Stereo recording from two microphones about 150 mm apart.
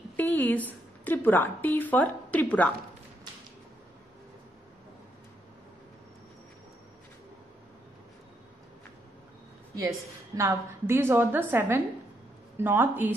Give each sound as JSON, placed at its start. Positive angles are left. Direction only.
{"t": 0.1, "sound": "a woman's voice", "side_deg": 10}
{"t": 9.8, "sound": "a woman's voice", "side_deg": -20}